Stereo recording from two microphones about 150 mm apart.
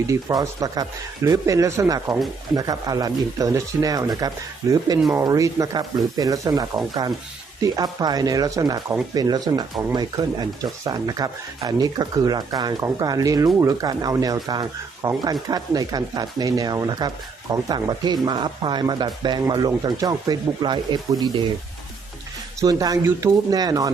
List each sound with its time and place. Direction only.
0.1 s speech: 20° right (ahead or behind)
22.6 s speech: 25° right (ahead or behind)